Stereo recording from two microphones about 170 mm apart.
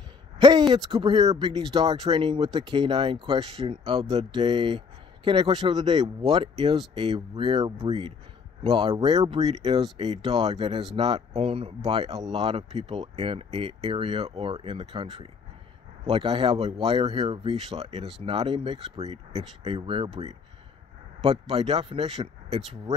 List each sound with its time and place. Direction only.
0.4 s speech: 25° right (ahead or behind)
9.5 s speech: 35° right (ahead or behind)